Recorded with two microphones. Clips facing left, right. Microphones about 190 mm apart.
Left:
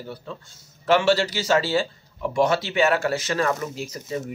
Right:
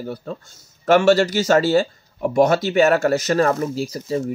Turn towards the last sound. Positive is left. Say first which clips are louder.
# right 7 dB
turn(degrees=-30)  # may be behind; listen again after turning